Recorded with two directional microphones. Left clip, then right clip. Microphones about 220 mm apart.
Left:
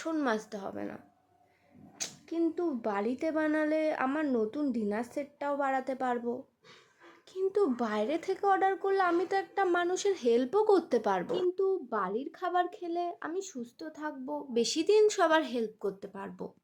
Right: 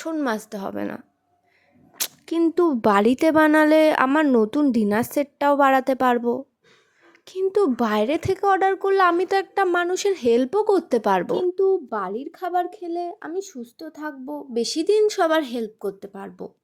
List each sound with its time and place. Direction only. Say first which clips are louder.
0.0 s a woman's voice: right 6 dB; 30° right (ahead or behind)